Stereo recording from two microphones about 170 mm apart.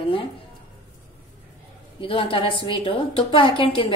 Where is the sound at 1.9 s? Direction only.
30° left (ahead or behind).